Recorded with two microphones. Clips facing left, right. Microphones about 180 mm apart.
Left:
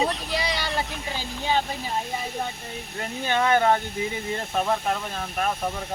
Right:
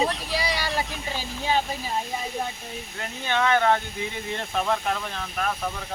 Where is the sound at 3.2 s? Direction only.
15° left (ahead or behind).